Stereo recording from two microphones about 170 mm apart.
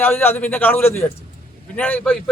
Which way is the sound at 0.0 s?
10° left (ahead or behind).